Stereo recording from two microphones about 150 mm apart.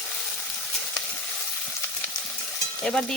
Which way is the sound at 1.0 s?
25° left (ahead or behind).